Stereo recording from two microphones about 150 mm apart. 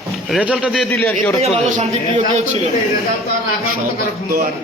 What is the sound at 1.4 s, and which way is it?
Speech, 45° right (ahead or behind).